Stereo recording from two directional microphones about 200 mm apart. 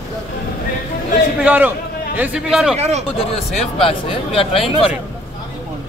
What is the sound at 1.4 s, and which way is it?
A man's voice, 10° right (ahead or behind).